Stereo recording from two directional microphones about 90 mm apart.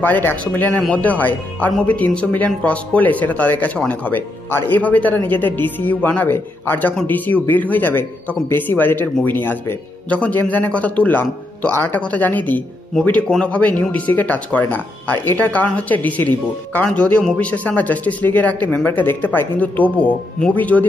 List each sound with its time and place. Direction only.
0.0 s speech: 20° left (ahead or behind)